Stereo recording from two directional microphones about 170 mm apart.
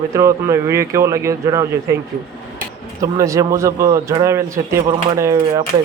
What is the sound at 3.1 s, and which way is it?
Speech, 20° right (ahead or behind).